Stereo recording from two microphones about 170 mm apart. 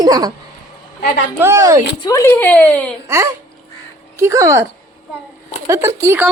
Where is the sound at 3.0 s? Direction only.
15° right (ahead or behind).